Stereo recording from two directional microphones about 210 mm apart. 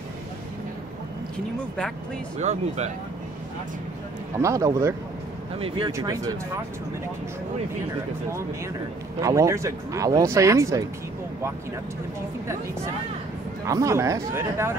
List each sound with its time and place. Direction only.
2.3 s speech: 35° right (ahead or behind)
4.4 s speech: 15° right (ahead or behind)
9.2 s speech: 15° right (ahead or behind)
13.7 s speech: 15° right (ahead or behind)